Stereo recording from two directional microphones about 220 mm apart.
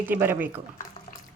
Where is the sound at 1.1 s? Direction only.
35° left (ahead or behind).